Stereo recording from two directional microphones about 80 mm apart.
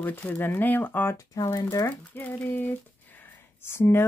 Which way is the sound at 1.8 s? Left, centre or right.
Left.